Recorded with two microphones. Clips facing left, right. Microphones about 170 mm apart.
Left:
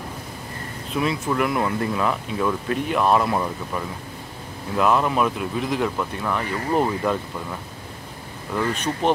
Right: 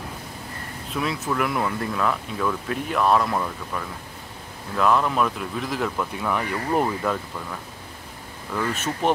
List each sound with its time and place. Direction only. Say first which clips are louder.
0.9 s speech: left 3 dB; centre (ahead or behind)
8.7 s speech: even; 5° right (ahead or behind)